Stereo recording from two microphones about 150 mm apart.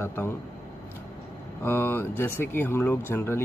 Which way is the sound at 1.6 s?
15° left (ahead or behind).